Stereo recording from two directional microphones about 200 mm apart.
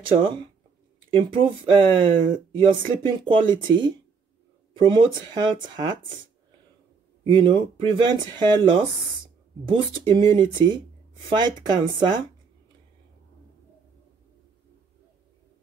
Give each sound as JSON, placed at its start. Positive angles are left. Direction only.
{"t": 1.1, "sound": "speech", "side_deg": -25}
{"t": 7.2, "sound": "speech", "side_deg": -25}